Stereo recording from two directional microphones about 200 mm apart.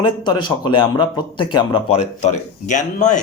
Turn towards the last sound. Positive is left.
turn(degrees=40)  # may be behind; listen again after turning